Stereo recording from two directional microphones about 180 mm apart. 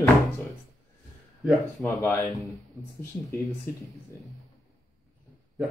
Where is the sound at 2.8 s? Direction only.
20° right (ahead or behind).